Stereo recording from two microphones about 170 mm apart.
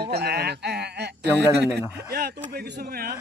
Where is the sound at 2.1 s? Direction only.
60° right (ahead or behind).